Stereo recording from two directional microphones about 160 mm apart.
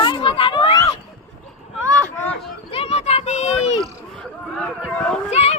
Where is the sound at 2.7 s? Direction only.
40° left (ahead or behind).